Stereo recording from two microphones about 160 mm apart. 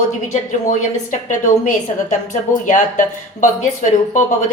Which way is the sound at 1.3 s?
55° left (ahead or behind).